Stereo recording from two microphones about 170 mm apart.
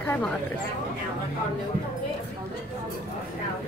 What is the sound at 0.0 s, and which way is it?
Chatter, 10° left (ahead or behind).